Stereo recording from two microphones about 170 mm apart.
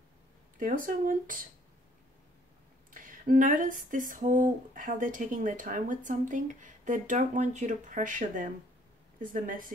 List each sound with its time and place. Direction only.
0.6 s speech: 55° right (ahead or behind)
2.9 s speech: 50° right (ahead or behind)